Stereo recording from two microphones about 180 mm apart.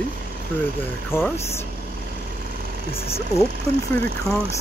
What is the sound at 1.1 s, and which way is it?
Speech, 15° left (ahead or behind).